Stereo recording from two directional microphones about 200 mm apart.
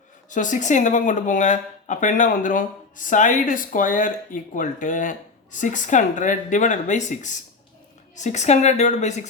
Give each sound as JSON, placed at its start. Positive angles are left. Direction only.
{"t": 0.3, "sound": "speech", "side_deg": 40}